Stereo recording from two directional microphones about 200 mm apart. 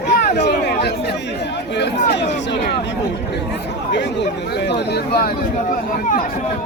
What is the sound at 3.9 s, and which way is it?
Speech, 60° left (ahead or behind).